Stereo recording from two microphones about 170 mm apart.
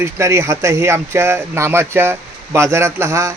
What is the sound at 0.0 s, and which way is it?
A man's voice, 15° right (ahead or behind).